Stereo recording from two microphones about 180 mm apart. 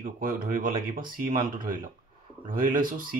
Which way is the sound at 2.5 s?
50° right (ahead or behind).